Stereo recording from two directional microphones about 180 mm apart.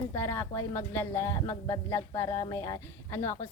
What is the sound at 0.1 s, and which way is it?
Speech, 15° left (ahead or behind).